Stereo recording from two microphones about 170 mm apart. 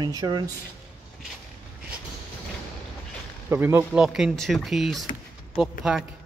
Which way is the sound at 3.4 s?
15° right (ahead or behind).